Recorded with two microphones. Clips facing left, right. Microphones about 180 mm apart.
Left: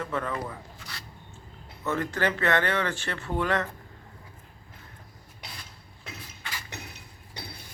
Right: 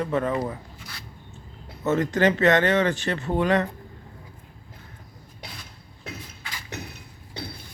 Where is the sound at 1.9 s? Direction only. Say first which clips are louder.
Right 7 dB; 20° right (ahead or behind).